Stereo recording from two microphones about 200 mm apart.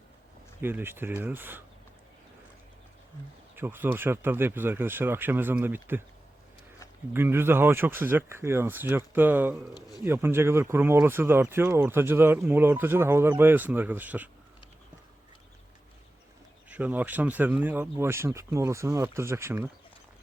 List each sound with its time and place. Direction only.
0.6 s speech: 10° right (ahead or behind)
3.5 s speech: 10° right (ahead or behind)
7.1 s speech: 10° right (ahead or behind)
16.6 s speech: 5° right (ahead or behind)